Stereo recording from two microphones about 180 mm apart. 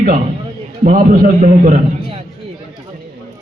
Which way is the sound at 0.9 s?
50° right (ahead or behind).